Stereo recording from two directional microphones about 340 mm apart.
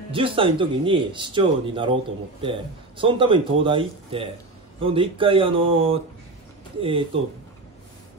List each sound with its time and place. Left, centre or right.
0.1 s speech: centre
3.0 s speech: centre